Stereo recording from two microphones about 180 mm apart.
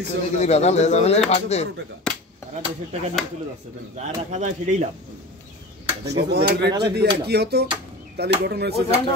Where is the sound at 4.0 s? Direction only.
40° right (ahead or behind).